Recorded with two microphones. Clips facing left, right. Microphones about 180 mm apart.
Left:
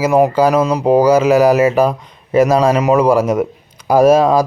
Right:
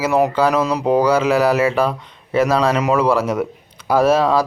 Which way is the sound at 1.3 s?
45° left (ahead or behind).